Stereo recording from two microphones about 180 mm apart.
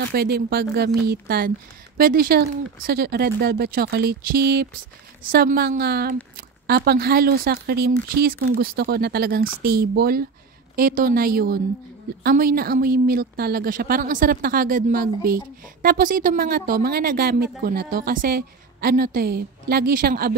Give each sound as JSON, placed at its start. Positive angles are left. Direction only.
{"t": 0.1, "sound": "a woman's voice", "side_deg": -60}